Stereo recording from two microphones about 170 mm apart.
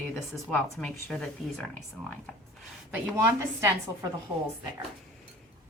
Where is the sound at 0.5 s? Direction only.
10° left (ahead or behind).